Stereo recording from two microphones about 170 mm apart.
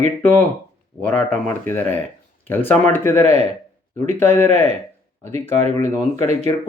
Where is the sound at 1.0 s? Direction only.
10° left (ahead or behind).